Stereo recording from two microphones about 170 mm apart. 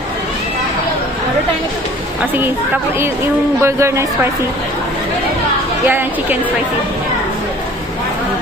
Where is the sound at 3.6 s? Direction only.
15° right (ahead or behind).